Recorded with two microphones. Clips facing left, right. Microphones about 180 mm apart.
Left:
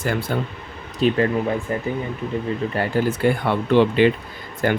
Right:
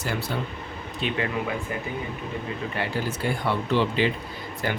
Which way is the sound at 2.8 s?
55° left (ahead or behind).